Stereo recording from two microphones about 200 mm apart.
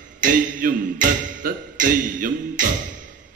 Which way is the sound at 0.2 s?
45° right (ahead or behind).